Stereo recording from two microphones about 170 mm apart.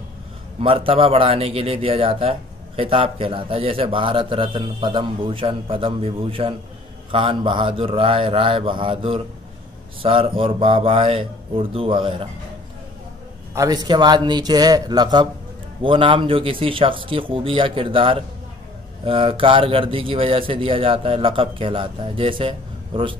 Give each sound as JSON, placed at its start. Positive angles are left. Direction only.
{"t": 0.6, "sound": "a man's voice", "side_deg": -35}
{"t": 13.6, "sound": "a man's voice", "side_deg": -25}